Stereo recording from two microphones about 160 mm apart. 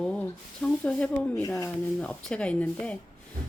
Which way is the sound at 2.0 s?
5° left (ahead or behind).